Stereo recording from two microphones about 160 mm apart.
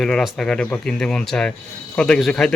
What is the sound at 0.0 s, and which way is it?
Speech, centre (ahead or behind).